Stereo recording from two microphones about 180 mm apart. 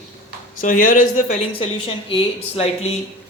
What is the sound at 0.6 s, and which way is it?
Speech, 45° left (ahead or behind).